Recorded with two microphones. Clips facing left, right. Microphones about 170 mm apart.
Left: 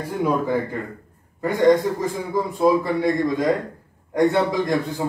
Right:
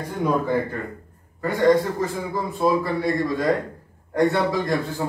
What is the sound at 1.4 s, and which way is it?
A man's voice, 20° left (ahead or behind).